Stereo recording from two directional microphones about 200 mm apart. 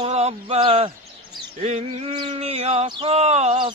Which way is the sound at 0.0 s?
30° right (ahead or behind).